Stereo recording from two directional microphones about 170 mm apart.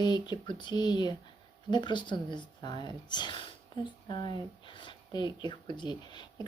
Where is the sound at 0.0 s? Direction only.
25° left (ahead or behind).